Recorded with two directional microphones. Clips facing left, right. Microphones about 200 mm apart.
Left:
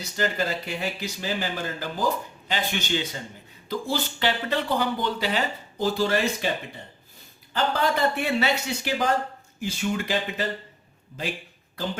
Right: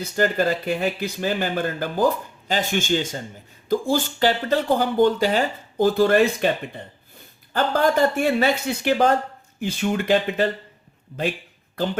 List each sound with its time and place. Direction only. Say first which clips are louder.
0.0 s speech: right 6 dB; 50° right (ahead or behind)
2.5 s speech: right 6 dB; 45° right (ahead or behind)
7.5 s speech: right 5 dB; 45° right (ahead or behind)